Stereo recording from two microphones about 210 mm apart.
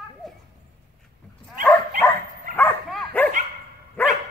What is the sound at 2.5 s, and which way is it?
Dog, 5° left (ahead or behind).